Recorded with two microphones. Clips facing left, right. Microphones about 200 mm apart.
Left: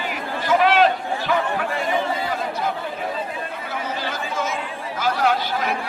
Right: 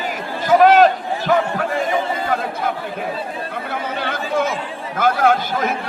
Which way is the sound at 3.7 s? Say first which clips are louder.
Right 3 dB; 60° right (ahead or behind).